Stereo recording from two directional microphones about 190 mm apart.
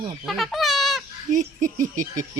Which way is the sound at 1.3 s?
40° right (ahead or behind).